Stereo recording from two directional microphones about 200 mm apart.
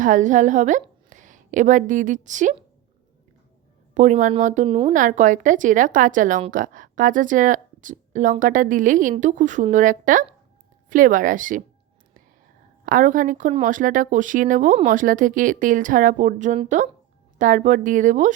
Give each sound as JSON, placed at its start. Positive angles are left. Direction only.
{"t": 0.0, "sound": "a woman's voice", "side_deg": -40}
{"t": 3.9, "sound": "speech", "side_deg": -40}
{"t": 4.9, "sound": "speech", "side_deg": -40}
{"t": 12.8, "sound": "speech", "side_deg": -40}